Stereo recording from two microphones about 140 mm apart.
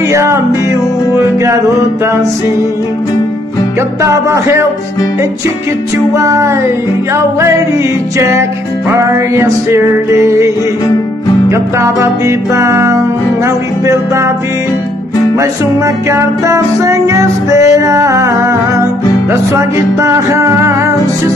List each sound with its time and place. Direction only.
0.1 s music: 20° right (ahead or behind)
4.0 s music: 20° right (ahead or behind)
6.1 s music: 20° right (ahead or behind)
16.1 s music: 20° right (ahead or behind)
19.5 s music: 20° right (ahead or behind)